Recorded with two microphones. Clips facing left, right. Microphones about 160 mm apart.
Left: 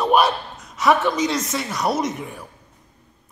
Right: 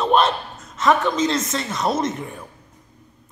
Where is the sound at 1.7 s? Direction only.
25° right (ahead or behind).